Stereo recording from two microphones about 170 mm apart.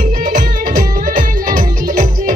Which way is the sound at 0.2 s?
50° right (ahead or behind).